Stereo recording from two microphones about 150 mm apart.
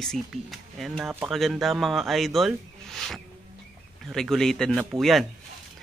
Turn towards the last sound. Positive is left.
turn(degrees=0)  # may be behind; listen again after turning